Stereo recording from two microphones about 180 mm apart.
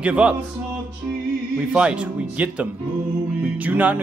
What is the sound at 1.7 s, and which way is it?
Speech, 5° right (ahead or behind).